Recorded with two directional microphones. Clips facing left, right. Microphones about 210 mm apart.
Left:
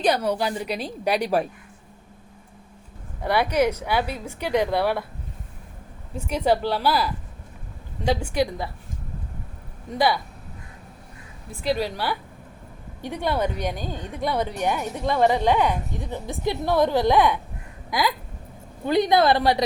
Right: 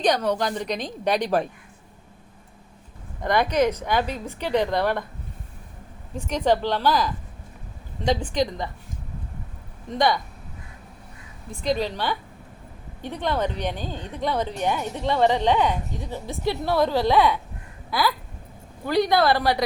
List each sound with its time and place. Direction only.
0.0 s a woman's voice: 10° left (ahead or behind)
3.2 s a woman's voice: 10° left (ahead or behind)
6.1 s a woman's voice: 10° left (ahead or behind)
9.9 s a woman's voice: 5° left (ahead or behind)
11.6 s a woman's voice: 10° left (ahead or behind)